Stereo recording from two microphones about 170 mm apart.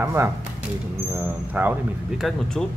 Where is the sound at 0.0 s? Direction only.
15° right (ahead or behind).